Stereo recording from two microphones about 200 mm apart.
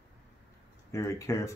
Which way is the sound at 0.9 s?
15° left (ahead or behind).